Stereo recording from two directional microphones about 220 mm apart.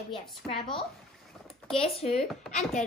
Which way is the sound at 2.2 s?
Centre (ahead or behind).